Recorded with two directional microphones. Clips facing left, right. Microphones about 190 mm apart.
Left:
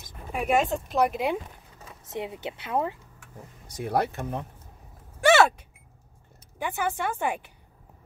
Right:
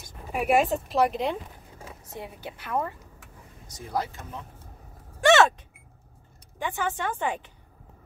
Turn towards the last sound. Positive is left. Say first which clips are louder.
# left 1 dB
turn(degrees=10)  # may be behind; listen again after turning